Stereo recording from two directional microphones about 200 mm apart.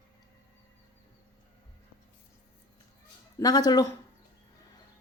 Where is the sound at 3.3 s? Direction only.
20° left (ahead or behind).